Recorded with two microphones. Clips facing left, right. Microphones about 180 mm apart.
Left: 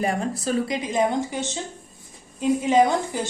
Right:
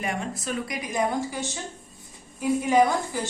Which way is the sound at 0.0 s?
35° left (ahead or behind).